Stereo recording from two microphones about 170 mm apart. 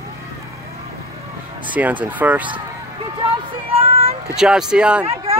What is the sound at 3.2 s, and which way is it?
Speech, 30° right (ahead or behind).